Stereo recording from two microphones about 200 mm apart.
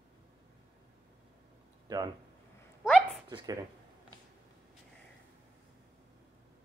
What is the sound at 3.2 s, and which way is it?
Speech, 20° right (ahead or behind).